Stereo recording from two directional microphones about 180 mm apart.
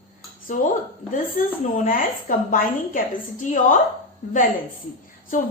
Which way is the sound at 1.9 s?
50° left (ahead or behind).